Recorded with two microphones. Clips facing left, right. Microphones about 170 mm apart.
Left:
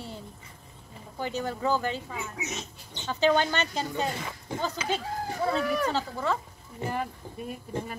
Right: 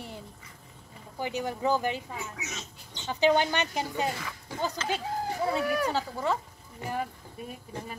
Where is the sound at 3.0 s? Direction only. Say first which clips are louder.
Even; 15° right (ahead or behind).